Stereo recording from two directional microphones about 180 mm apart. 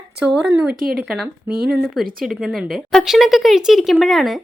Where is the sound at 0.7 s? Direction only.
55° right (ahead or behind).